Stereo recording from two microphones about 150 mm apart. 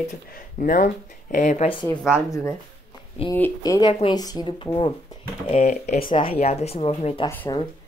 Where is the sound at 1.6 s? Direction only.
30° left (ahead or behind).